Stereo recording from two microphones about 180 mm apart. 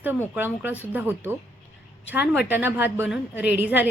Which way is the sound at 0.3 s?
10° right (ahead or behind).